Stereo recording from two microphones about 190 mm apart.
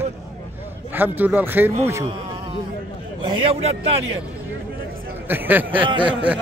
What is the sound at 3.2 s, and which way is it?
Speech, 25° right (ahead or behind).